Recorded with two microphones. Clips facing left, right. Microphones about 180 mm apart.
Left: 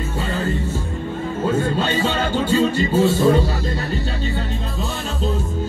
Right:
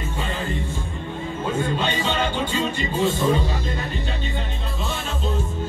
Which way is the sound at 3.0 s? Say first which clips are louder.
Left 4 dB; 40° left (ahead or behind).